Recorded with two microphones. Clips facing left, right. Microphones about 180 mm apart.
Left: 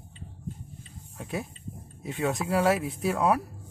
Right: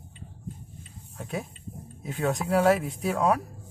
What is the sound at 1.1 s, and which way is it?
Speech, centre (ahead or behind).